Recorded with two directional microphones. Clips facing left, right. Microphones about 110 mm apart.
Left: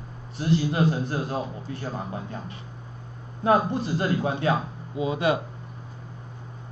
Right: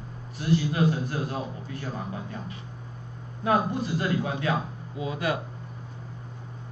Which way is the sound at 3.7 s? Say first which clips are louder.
Left 2 dB; 30° left (ahead or behind).